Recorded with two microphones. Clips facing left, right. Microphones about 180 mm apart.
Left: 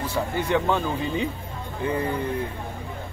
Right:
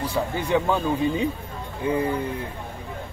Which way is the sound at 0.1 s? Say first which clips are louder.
Even; 10° right (ahead or behind).